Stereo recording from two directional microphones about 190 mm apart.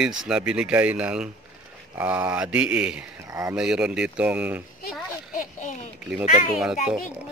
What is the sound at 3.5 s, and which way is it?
Speech, 5° right (ahead or behind).